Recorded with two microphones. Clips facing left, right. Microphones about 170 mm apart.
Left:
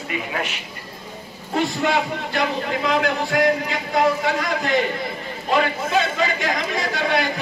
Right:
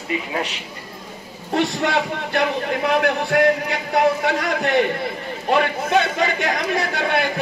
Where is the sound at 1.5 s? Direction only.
65° right (ahead or behind).